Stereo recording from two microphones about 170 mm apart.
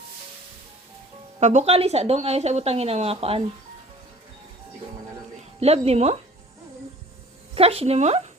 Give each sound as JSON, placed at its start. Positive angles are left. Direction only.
{"t": 1.4, "sound": "a woman's voice", "side_deg": -45}
{"t": 5.5, "sound": "a woman's voice", "side_deg": -35}
{"t": 7.5, "sound": "a woman's voice", "side_deg": -35}